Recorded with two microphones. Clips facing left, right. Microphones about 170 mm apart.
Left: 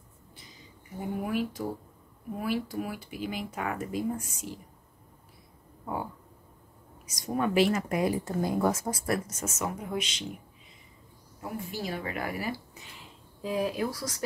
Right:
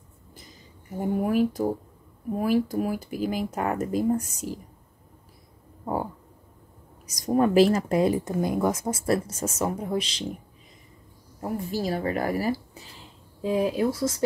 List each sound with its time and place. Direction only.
0.9 s speech: 45° right (ahead or behind)
7.1 s speech: 40° right (ahead or behind)
11.4 s speech: 40° right (ahead or behind)